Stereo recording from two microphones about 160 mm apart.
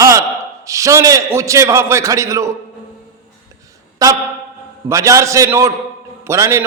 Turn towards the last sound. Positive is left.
turn(degrees=-15)  # may be behind; listen again after turning